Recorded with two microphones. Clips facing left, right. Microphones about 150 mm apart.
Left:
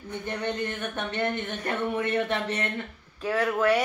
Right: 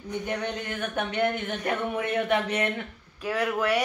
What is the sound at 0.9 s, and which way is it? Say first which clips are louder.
Speech: right 4 dB; 10° right (ahead or behind).